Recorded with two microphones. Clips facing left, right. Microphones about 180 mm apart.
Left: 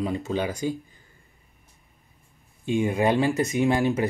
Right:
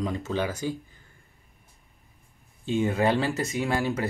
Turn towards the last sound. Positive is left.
turn(degrees=20)  # may be behind; listen again after turning